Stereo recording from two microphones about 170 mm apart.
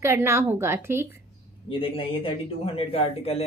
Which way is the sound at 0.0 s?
15° right (ahead or behind).